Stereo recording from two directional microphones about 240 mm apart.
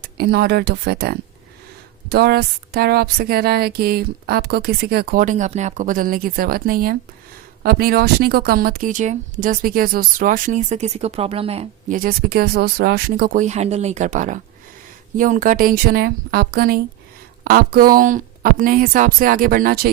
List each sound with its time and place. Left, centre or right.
0.0 s speech: right